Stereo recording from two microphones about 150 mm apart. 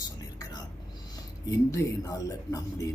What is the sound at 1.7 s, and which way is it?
Speech, 20° left (ahead or behind).